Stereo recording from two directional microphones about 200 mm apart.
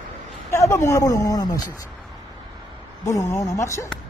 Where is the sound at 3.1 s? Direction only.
15° left (ahead or behind).